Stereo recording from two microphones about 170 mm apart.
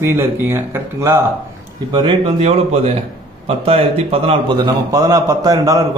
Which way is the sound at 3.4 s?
35° right (ahead or behind).